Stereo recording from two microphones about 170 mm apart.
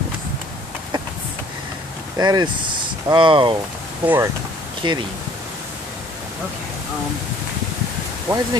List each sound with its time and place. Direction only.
2.1 s speech: 25° right (ahead or behind)
4.0 s speech: 10° right (ahead or behind)
4.8 s speech: 25° right (ahead or behind)
8.3 s speech: 15° right (ahead or behind)